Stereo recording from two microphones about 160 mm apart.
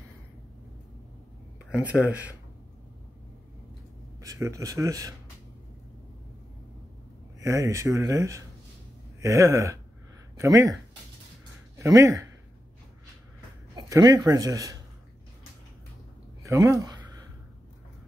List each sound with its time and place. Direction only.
1.7 s speech: 10° right (ahead or behind)
4.2 s speech: 20° right (ahead or behind)
7.3 s speech: 20° right (ahead or behind)
11.8 s speech: 20° right (ahead or behind)
13.7 s speech: 20° right (ahead or behind)
16.4 s a sound: 20° right (ahead or behind)